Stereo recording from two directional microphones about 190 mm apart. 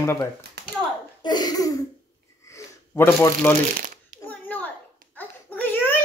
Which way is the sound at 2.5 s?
15° left (ahead or behind).